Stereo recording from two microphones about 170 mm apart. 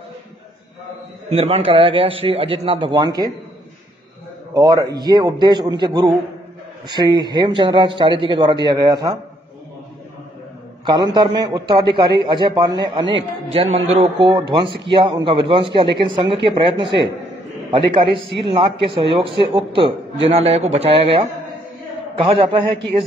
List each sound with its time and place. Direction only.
1.3 s speech: 35° right (ahead or behind)
4.6 s a man's voice: 20° right (ahead or behind)
10.9 s a man's voice: 25° right (ahead or behind)
13.7 s a man's voice: 40° right (ahead or behind)